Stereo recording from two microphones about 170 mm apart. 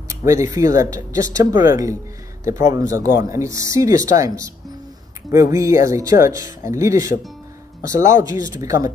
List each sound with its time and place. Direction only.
0.1 s speech: 20° right (ahead or behind)